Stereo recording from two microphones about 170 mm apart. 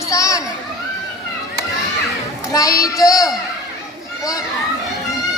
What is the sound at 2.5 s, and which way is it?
Speech, 20° left (ahead or behind).